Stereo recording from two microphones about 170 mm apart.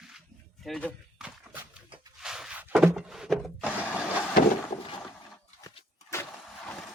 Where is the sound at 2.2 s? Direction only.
5° right (ahead or behind).